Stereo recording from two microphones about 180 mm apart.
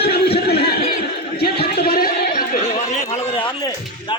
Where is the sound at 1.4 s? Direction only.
60° left (ahead or behind).